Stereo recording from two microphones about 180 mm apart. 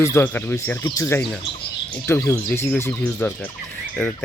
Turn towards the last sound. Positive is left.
turn(degrees=5)  # may be behind; listen again after turning